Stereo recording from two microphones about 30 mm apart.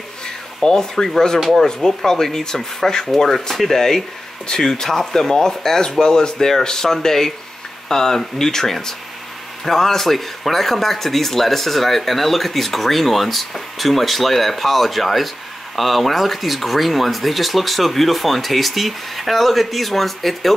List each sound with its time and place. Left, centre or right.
0.6 s speech: centre
6.3 s speech: centre